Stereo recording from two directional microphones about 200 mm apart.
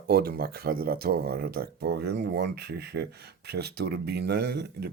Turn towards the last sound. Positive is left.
turn(degrees=-55)  # may be behind; listen again after turning